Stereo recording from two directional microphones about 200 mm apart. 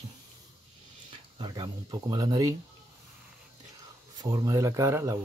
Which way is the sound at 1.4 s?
20° right (ahead or behind).